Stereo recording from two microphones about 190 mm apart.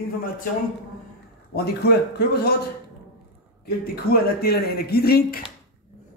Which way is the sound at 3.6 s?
55° left (ahead or behind).